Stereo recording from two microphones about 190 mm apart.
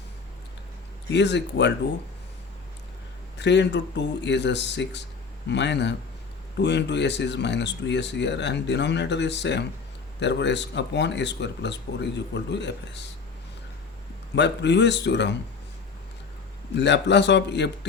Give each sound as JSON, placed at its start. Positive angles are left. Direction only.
{"t": 1.1, "sound": "speech", "side_deg": 65}
{"t": 3.3, "sound": "speech", "side_deg": 65}
{"t": 14.3, "sound": "speech", "side_deg": 65}
{"t": 16.7, "sound": "speech", "side_deg": 65}